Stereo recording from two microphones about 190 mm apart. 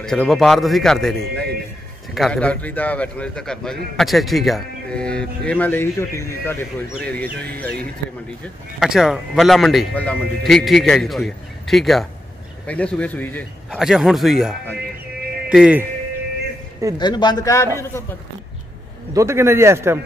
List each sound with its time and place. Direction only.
0.0 s a man's voice: centre (ahead or behind)
8.7 s a man's voice: centre (ahead or behind)
13.7 s a man's voice: centre (ahead or behind)
17.0 s speech: 20° left (ahead or behind)
19.1 s a man's voice: 15° right (ahead or behind)